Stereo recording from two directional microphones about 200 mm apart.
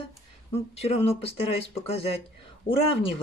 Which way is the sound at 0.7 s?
30° left (ahead or behind).